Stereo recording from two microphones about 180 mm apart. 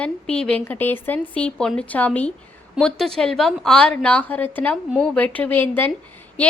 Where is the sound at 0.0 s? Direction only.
5° left (ahead or behind).